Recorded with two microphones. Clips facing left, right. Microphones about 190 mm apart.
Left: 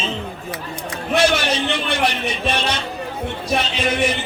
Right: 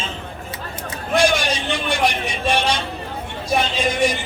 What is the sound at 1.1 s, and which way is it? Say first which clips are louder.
A man's voice: even; 15° right (ahead or behind).